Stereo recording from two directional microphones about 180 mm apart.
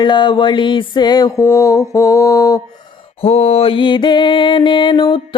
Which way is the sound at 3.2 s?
35° left (ahead or behind).